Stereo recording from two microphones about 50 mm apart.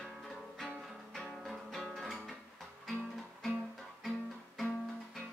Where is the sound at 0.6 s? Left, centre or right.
Centre.